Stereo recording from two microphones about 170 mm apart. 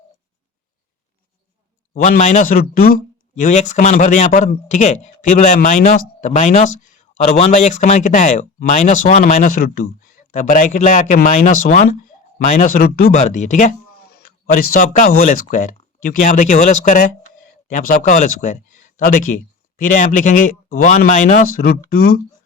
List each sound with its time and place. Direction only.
1.9 s speech: 50° left (ahead or behind)
13.2 s speech: 45° left (ahead or behind)
14.1 s a man's voice: 60° left (ahead or behind)